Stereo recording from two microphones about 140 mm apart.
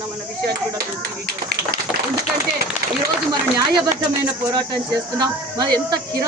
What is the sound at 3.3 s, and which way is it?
Speech, 30° right (ahead or behind).